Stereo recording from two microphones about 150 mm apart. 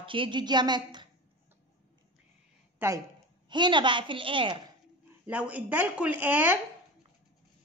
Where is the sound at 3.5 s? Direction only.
30° right (ahead or behind).